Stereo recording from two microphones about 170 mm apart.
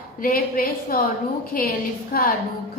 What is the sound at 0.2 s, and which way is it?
A woman's voice, 55° left (ahead or behind).